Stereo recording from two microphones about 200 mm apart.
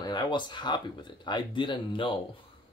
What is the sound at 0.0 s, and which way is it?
Speech, 20° left (ahead or behind).